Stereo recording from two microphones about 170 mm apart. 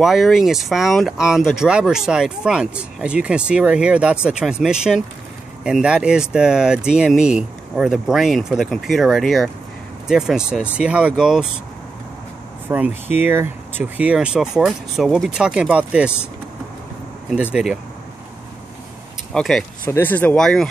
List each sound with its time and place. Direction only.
0.0 s speech: centre (ahead or behind)
12.6 s speech: 10° right (ahead or behind)
17.3 s speech: 5° right (ahead or behind)
19.3 s speech: 5° left (ahead or behind)